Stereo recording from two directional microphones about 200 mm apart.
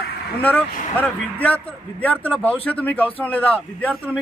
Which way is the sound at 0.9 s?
10° left (ahead or behind).